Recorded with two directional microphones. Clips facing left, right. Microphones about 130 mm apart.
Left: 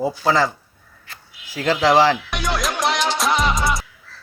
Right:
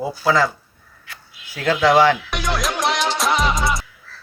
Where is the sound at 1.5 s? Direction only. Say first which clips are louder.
Even; 35° left (ahead or behind).